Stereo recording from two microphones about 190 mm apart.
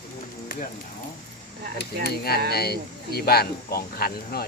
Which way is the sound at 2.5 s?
55° left (ahead or behind).